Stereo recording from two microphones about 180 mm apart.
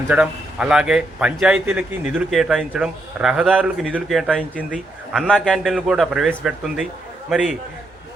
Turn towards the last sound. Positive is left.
turn(degrees=0)  # may be behind; listen again after turning